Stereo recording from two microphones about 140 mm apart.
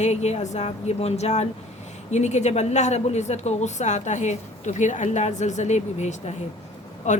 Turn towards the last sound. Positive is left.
turn(degrees=60)  # may be behind; listen again after turning